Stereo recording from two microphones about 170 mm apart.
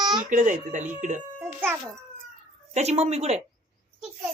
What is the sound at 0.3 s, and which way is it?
Speech, 50° right (ahead or behind).